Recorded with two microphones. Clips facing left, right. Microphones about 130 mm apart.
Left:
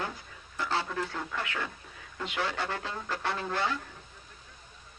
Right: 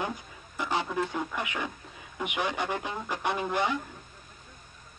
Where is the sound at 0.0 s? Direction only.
15° right (ahead or behind).